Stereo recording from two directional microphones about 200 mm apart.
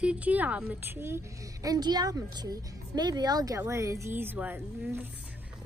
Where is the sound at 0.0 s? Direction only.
5° right (ahead or behind).